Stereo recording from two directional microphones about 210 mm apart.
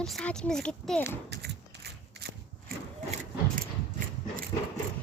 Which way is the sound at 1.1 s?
55° right (ahead or behind).